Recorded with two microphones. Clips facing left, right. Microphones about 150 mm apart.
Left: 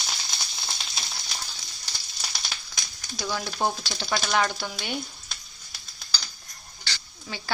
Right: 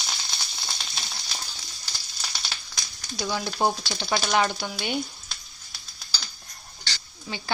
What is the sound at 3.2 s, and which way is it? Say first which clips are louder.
A woman's voice: right 2 dB; 10° right (ahead or behind).